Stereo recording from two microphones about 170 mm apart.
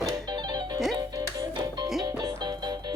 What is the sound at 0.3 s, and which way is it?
Music, 25° right (ahead or behind).